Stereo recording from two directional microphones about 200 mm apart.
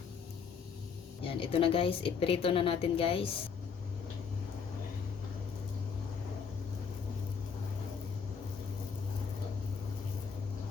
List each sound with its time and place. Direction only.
1.3 s a woman's voice: 25° left (ahead or behind)